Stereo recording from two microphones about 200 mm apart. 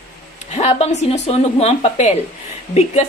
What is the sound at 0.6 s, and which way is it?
Speech, 35° left (ahead or behind).